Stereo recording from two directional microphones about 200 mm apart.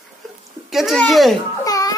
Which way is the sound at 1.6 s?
20° left (ahead or behind).